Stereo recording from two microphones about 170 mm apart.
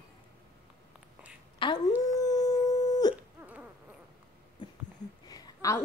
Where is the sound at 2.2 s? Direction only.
20° left (ahead or behind).